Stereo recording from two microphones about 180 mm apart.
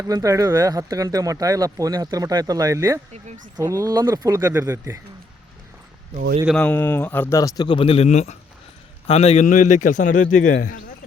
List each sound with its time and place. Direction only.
0.0 s speech: 20° right (ahead or behind)
3.1 s speech: 45° right (ahead or behind)
3.6 s speech: 15° right (ahead or behind)
6.6 s a man's voice: 10° left (ahead or behind); by 10.8 s 50° left (ahead or behind)